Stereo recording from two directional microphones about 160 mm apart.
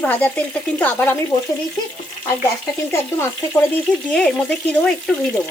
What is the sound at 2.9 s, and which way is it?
Speech, 15° left (ahead or behind).